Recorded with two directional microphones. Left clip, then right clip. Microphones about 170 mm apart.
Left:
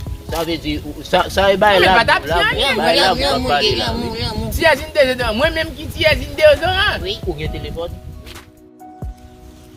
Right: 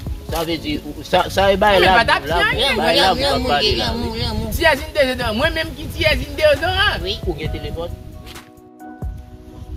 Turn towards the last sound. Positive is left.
turn(degrees=-5)  # may be behind; listen again after turning